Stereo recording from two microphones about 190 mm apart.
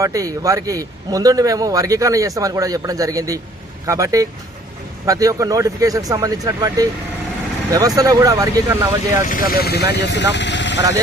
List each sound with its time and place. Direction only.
0.0 s a man's voice: 15° right (ahead or behind)
9.2 s speech: 45° left (ahead or behind); by 10.8 s 70° left (ahead or behind)